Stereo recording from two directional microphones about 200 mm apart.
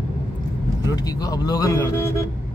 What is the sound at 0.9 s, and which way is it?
A man's voice, 20° left (ahead or behind).